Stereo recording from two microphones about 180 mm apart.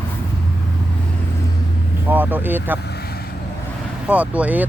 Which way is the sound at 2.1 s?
10° right (ahead or behind).